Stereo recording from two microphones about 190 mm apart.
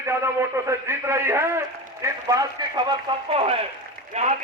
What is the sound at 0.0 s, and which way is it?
A man's voice, 15° right (ahead or behind).